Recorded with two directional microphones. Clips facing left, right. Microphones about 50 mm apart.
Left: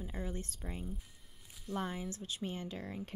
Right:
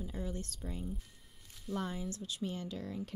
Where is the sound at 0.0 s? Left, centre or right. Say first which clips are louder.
Right 1 dB; left.